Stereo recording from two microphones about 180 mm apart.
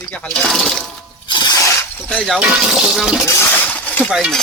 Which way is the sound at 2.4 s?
5° right (ahead or behind).